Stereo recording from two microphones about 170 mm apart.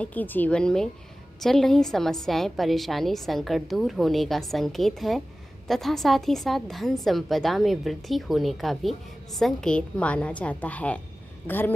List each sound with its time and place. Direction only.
0.0 s a woman's voice: 10° left (ahead or behind)